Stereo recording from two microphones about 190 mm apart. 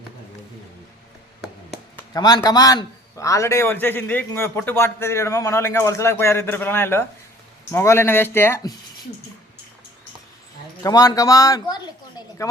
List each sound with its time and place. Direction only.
2.1 s a man's voice: 20° left (ahead or behind)
10.8 s speech: 20° left (ahead or behind)